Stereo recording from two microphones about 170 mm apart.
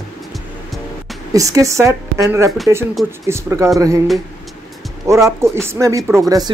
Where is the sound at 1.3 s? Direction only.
20° right (ahead or behind).